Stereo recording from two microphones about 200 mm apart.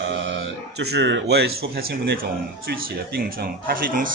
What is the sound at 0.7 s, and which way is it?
A man's voice, 60° right (ahead or behind).